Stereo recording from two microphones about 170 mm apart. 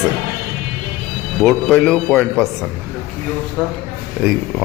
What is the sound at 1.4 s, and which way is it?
Speech, centre (ahead or behind).